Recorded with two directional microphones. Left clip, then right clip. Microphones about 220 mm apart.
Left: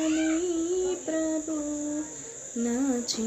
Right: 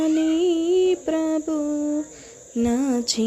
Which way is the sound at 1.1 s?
40° right (ahead or behind).